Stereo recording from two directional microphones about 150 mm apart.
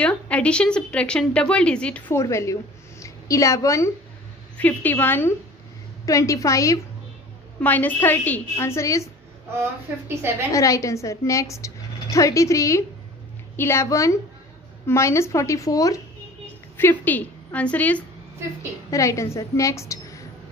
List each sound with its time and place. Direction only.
0.0 s a woman's voice: 10° left (ahead or behind)
2.1 s a woman's voice: 20° left (ahead or behind)
9.6 s a woman's voice: 15° right (ahead or behind)
10.5 s a woman's voice: 20° left (ahead or behind)
16.7 s a woman's voice: 15° left (ahead or behind)
18.9 s a woman's voice: 20° left (ahead or behind)